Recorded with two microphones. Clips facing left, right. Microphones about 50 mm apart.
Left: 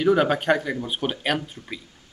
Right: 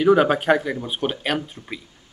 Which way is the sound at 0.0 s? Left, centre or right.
Centre.